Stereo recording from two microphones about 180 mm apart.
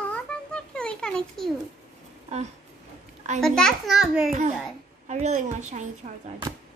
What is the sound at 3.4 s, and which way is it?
Speech, 5° left (ahead or behind).